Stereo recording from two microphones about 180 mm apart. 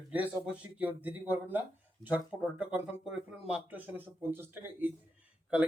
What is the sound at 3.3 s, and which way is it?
Speech, 5° right (ahead or behind).